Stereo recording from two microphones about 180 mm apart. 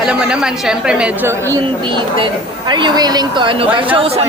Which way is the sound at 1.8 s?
25° right (ahead or behind).